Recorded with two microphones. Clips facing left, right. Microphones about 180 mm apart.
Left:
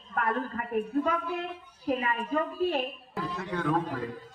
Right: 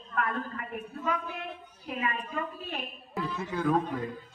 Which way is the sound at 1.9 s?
40° left (ahead or behind).